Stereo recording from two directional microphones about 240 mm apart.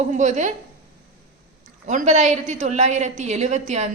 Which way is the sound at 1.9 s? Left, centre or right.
Right.